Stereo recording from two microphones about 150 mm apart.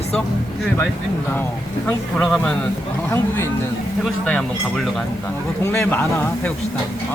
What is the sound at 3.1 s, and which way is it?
Speech, 15° left (ahead or behind).